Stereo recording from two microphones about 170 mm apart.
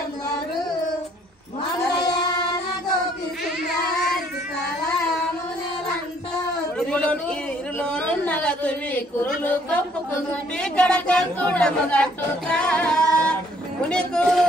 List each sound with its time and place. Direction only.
1.9 s music: 25° left (ahead or behind)
6.8 s a sound: 5° left (ahead or behind)
10.6 s speech: 5° left (ahead or behind)